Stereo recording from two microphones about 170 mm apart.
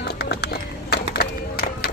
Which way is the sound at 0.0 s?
75° left (ahead or behind).